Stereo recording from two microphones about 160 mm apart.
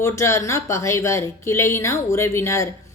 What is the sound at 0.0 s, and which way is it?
Speech, 15° left (ahead or behind).